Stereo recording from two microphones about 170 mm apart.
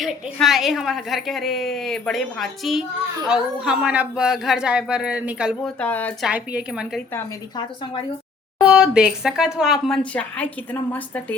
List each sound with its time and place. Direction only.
0.0 s a woman's voice: centre (ahead or behind)
5.8 s a woman's voice: 10° left (ahead or behind)
6.2 s a woman's voice: 5° right (ahead or behind)
8.6 s a woman's voice: 5° right (ahead or behind)